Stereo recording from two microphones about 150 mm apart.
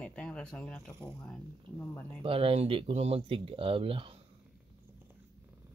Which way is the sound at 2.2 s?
40° right (ahead or behind).